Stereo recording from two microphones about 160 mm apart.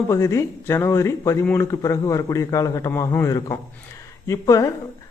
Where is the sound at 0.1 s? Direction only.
20° left (ahead or behind).